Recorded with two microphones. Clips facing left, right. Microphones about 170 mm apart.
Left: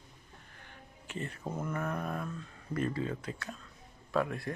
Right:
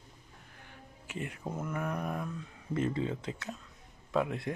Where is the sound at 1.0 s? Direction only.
10° right (ahead or behind).